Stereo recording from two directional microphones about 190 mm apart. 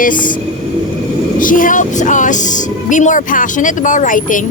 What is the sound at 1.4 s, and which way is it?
Speech, 45° left (ahead or behind).